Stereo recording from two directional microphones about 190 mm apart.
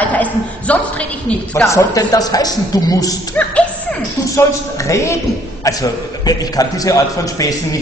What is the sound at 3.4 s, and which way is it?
A woman's voice, 5° left (ahead or behind).